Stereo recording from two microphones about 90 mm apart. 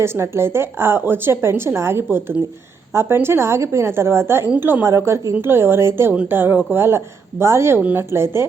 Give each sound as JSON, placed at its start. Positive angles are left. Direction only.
{"t": 0.0, "sound": "a woman's voice", "side_deg": -30}
{"t": 7.8, "sound": "a woman's voice", "side_deg": -15}
{"t": 8.1, "sound": "a woman's voice", "side_deg": -30}